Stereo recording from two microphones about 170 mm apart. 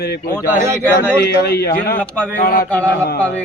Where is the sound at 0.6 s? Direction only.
15° right (ahead or behind).